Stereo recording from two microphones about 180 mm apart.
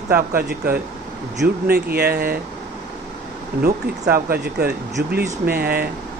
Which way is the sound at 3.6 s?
60° right (ahead or behind).